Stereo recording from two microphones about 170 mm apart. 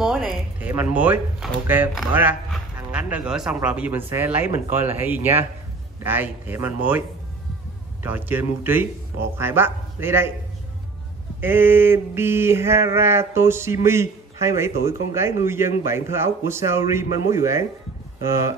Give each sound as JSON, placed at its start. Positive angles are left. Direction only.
{"t": 0.0, "sound": "drawer open or close", "side_deg": -5}
{"t": 1.7, "sound": "speech", "side_deg": -10}
{"t": 8.0, "sound": "speech", "side_deg": -10}
{"t": 11.4, "sound": "speech", "side_deg": -10}